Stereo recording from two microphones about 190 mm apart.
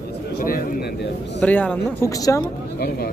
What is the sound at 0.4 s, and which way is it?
Speech, 50° left (ahead or behind).